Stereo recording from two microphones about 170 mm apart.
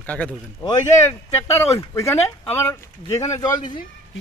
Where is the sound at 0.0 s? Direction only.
10° left (ahead or behind).